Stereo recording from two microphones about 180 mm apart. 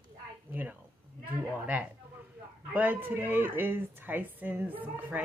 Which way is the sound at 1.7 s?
10° right (ahead or behind).